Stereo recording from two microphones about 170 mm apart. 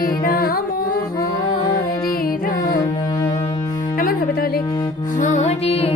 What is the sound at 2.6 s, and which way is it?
Music, 20° left (ahead or behind).